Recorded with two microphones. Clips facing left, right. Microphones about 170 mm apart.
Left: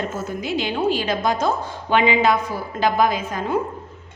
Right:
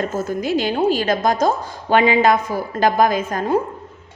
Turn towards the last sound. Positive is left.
turn(degrees=-45)  # may be behind; listen again after turning